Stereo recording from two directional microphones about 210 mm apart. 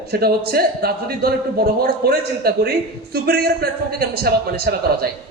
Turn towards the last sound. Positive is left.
turn(degrees=-45)  # may be behind; listen again after turning